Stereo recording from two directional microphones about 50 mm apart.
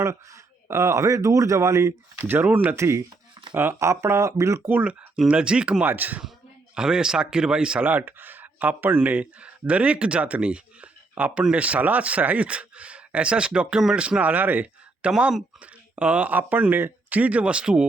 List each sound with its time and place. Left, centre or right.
0.7 s speech: right
2.2 s speech: right
2.7 s speech: right
3.5 s speech: right
3.8 s speech: right
4.8 s speech: right
5.8 s speech: right
6.7 s speech: centre
7.9 s speech: right
15.0 s speech: right
17.2 s speech: right